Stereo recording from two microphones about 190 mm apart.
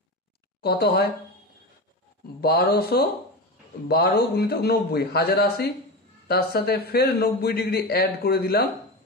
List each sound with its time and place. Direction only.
0.6 s speech: 55° left (ahead or behind)
2.4 s a man's voice: 55° left (ahead or behind)